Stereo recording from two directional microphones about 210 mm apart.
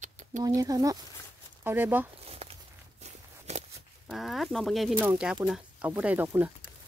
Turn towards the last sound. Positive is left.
turn(degrees=-10)  # may be behind; listen again after turning